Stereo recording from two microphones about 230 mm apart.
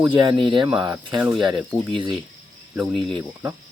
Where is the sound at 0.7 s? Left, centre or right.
Centre.